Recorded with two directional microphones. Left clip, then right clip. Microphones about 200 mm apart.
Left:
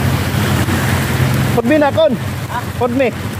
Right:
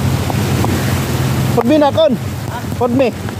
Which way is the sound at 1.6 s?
35° right (ahead or behind).